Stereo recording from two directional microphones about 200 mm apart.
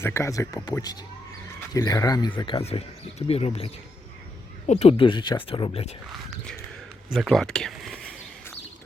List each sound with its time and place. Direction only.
0.0 s speech: 15° left (ahead or behind); by 6.0 s 30° left (ahead or behind)
6.1 s speech: centre (ahead or behind)